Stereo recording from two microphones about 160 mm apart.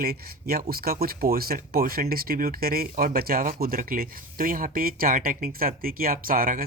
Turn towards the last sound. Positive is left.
turn(degrees=-60)  # may be behind; listen again after turning